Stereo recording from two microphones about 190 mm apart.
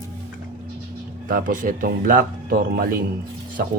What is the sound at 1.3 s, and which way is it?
Speech, 45° right (ahead or behind).